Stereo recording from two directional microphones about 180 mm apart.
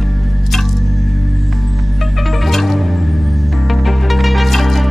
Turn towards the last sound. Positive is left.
turn(degrees=0)  # may be behind; listen again after turning